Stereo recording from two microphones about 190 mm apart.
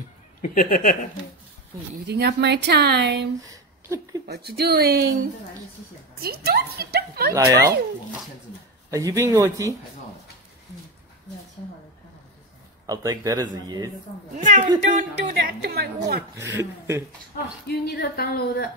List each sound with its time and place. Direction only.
0.4 s speech: 50° left (ahead or behind)
2.0 s speech: 60° right (ahead or behind)
3.4 s a sound: 15° right (ahead or behind)
4.3 s speech: 60° right (ahead or behind)
6.2 s speech: 55° right (ahead or behind)
7.3 s speech: 15° right (ahead or behind)
12.8 s speech: 20° right (ahead or behind)
14.3 s speech: 40° right (ahead or behind)
16.3 s speech: 15° right (ahead or behind)
17.3 s speech: 55° left (ahead or behind)